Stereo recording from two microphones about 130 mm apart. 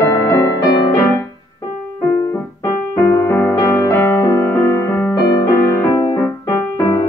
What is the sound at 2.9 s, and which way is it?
Music, 20° left (ahead or behind).